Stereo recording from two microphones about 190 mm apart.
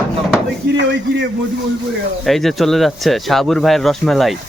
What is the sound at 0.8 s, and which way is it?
Speech, 70° right (ahead or behind).